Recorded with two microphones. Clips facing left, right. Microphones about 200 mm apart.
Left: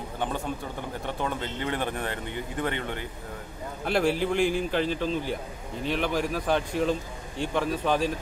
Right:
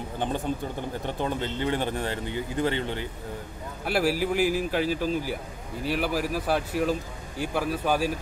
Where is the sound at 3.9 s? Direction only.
5° right (ahead or behind).